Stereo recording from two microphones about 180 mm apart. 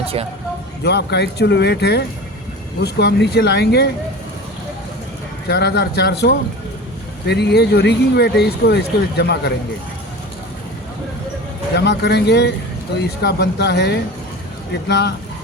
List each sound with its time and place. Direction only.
0.9 s speech: 70° left (ahead or behind)
5.5 s speech: 65° left (ahead or behind)
11.9 s speech: 70° left (ahead or behind)